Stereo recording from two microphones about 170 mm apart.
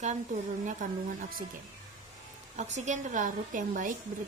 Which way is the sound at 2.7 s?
45° right (ahead or behind).